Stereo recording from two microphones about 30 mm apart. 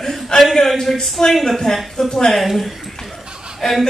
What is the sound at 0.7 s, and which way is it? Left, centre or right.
Speech, centre.